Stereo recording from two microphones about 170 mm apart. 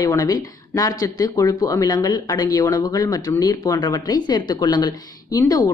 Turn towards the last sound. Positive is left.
turn(degrees=20)  # may be behind; listen again after turning